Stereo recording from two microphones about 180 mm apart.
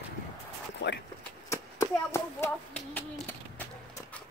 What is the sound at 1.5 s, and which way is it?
A child's voice, 15° left (ahead or behind).